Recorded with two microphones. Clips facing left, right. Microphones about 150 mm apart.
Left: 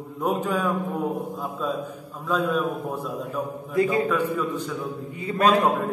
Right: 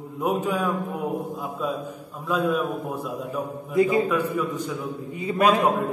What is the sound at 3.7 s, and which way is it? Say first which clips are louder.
Speech: right 2 dB; 20° right (ahead or behind).